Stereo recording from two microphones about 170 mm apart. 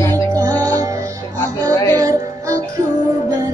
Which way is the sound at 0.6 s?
20° right (ahead or behind).